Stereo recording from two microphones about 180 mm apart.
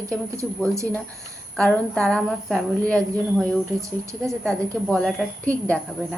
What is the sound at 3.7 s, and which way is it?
Speech, 15° right (ahead or behind).